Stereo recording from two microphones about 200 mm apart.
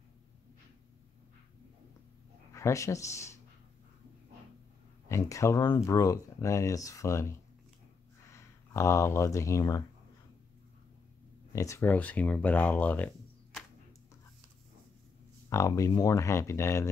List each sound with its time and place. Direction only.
2.5 s speech: 15° left (ahead or behind)
5.0 s speech: 15° left (ahead or behind)
8.4 s speech: 15° left (ahead or behind)
11.5 s speech: 15° left (ahead or behind)
15.5 s speech: 15° left (ahead or behind)